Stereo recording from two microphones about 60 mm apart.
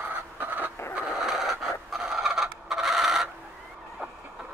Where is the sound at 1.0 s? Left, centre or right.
Centre.